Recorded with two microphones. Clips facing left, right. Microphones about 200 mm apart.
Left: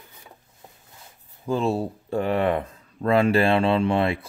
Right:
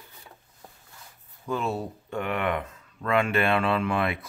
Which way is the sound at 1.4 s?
30° left (ahead or behind).